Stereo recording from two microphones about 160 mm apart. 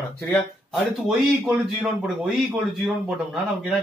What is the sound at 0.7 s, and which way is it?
A man's voice, centre (ahead or behind).